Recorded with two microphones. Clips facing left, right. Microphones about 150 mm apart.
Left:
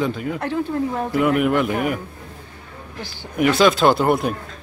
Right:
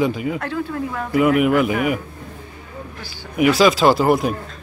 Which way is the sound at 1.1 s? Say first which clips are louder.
Right 3 dB; 5° right (ahead or behind).